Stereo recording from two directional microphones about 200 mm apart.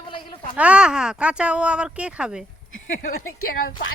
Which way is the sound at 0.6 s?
5° right (ahead or behind).